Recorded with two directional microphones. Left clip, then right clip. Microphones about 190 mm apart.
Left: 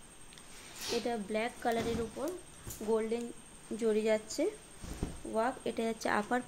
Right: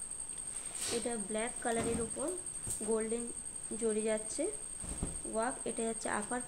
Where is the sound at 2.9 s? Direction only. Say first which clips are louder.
Left 3 dB; 20° left (ahead or behind).